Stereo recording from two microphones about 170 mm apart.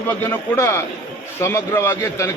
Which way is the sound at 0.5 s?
15° left (ahead or behind).